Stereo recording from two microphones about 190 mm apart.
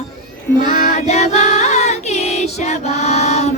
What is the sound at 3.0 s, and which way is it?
Mantra, 35° left (ahead or behind).